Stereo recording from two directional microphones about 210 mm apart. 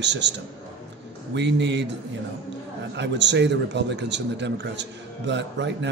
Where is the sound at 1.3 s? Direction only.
55° right (ahead or behind).